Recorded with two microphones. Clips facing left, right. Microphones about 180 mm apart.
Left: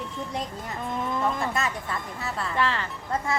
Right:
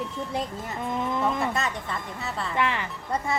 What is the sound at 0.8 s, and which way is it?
Speech, 20° right (ahead or behind).